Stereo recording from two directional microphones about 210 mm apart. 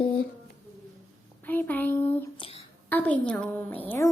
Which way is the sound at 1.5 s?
10° left (ahead or behind).